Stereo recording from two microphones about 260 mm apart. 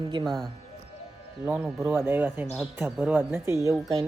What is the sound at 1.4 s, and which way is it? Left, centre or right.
Speech, centre.